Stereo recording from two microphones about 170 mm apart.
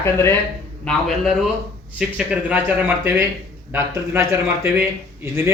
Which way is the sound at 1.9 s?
5° right (ahead or behind).